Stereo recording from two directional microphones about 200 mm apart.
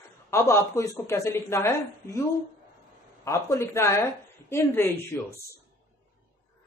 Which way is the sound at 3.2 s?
15° left (ahead or behind).